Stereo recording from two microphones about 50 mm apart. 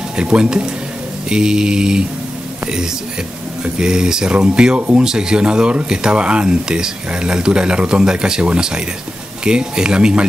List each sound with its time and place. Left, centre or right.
0.1 s speech: centre
3.6 s speech: centre